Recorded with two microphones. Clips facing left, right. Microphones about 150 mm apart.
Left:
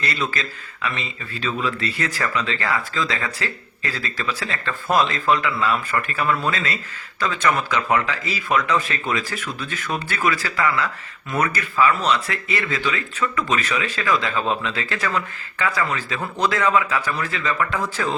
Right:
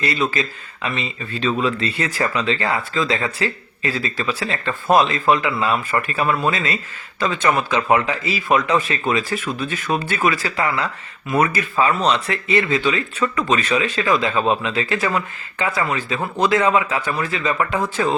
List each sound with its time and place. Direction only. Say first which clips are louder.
0.0 s speech: right 5 dB; 20° right (ahead or behind)